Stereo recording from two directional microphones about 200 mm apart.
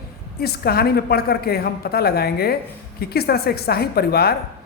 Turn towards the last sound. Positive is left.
turn(degrees=50)  # may be behind; listen again after turning